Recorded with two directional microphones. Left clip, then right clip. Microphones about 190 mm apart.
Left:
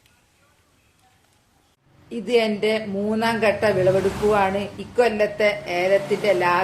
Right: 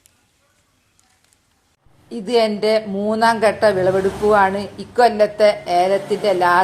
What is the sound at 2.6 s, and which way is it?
A woman's voice, 30° right (ahead or behind).